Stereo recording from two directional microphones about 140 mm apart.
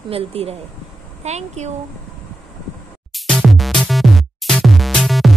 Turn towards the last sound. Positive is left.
turn(degrees=0)  # may be behind; listen again after turning